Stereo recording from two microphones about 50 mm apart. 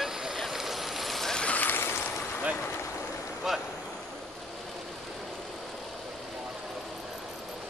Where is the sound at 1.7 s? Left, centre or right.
Left.